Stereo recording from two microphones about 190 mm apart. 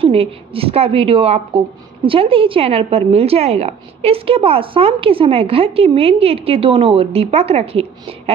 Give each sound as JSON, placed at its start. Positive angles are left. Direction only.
{"t": 0.0, "sound": "a woman's voice", "side_deg": -30}